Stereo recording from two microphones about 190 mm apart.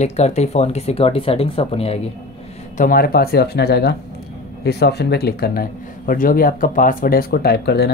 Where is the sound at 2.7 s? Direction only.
45° left (ahead or behind).